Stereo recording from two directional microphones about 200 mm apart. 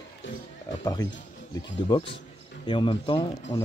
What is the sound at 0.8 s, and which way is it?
Speech, 20° left (ahead or behind).